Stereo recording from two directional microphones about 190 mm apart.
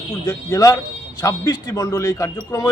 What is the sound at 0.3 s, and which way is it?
A man's voice, 20° left (ahead or behind).